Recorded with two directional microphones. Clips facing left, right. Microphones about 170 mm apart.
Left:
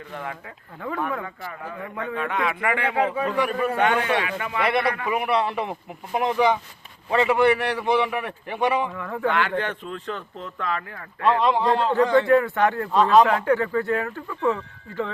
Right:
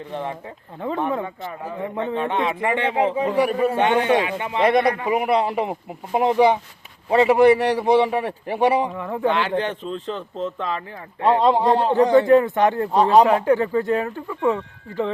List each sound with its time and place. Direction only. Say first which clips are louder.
0.1 s speech: right 5 dB; 25° right (ahead or behind)
5.4 s a man's voice: right 3 dB; 15° right (ahead or behind); by 8.9 s 35° right (ahead or behind)
8.9 s speech: right 3 dB; 20° right (ahead or behind)